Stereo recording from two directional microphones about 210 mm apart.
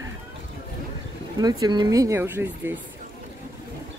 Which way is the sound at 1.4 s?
20° right (ahead or behind).